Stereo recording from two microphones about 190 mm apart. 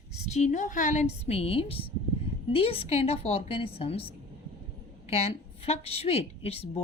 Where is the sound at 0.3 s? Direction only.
35° left (ahead or behind).